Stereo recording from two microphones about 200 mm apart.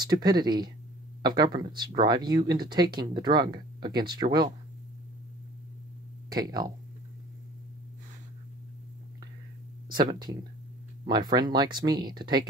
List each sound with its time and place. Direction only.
0.0 s speech: 20° right (ahead or behind)
6.3 s speech: 20° right (ahead or behind)
9.8 s speech: 20° right (ahead or behind)